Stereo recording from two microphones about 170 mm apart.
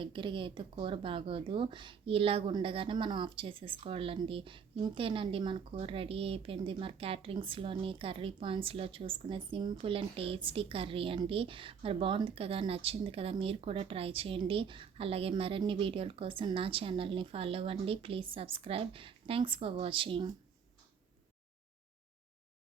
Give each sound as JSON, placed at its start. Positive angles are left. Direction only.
{"t": 0.0, "sound": "speech", "side_deg": -30}